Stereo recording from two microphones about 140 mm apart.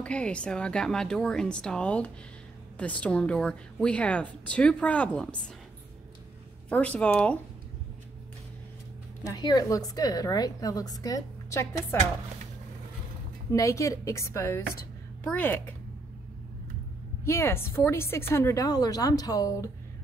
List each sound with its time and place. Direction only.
0.0 s a woman's voice: 10° left (ahead or behind)
6.7 s a woman's voice: 10° left (ahead or behind)
9.2 s a woman's voice: 30° left (ahead or behind)
13.5 s a woman's voice: 20° left (ahead or behind)
17.2 s a woman's voice: 20° left (ahead or behind)